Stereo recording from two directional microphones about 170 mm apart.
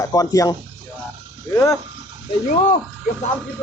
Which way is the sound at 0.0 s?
20° left (ahead or behind).